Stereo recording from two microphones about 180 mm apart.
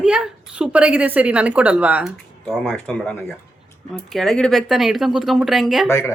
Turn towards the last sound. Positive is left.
turn(degrees=15)  # may be behind; listen again after turning